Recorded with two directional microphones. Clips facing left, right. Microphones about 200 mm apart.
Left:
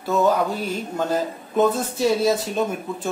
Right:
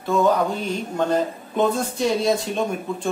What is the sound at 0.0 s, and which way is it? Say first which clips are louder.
A man's voice: even; 5° left (ahead or behind).